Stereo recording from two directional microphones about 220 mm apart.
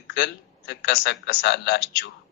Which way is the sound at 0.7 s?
50° left (ahead or behind).